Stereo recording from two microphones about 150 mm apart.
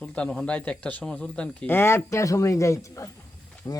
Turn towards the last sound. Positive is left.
turn(degrees=20)  # may be behind; listen again after turning